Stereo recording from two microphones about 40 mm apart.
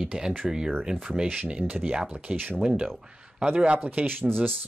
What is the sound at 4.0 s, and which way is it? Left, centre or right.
Speech, right.